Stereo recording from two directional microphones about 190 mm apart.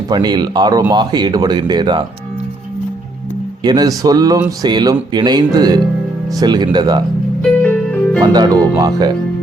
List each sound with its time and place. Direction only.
0.1 s speech: 20° right (ahead or behind)
3.6 s speech: 20° right (ahead or behind)
7.6 s music: 5° left (ahead or behind)
8.3 s speech: 20° right (ahead or behind)